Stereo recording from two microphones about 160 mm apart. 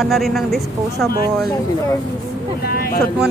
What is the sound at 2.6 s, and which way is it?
Speech, 70° left (ahead or behind).